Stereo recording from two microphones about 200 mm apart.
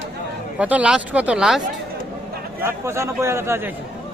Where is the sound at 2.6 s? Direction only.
15° right (ahead or behind).